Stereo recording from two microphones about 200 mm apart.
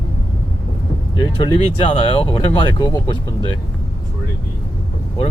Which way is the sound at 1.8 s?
25° left (ahead or behind).